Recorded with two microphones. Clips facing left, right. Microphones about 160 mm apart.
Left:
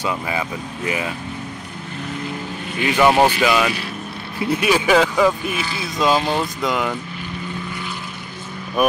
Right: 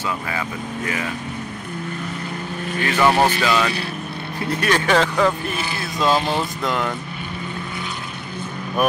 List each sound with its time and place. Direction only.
0.0 s speech: 20° left (ahead or behind)
2.8 s speech: 15° left (ahead or behind)